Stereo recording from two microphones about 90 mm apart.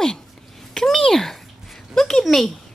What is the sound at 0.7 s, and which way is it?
Speech, 5° left (ahead or behind).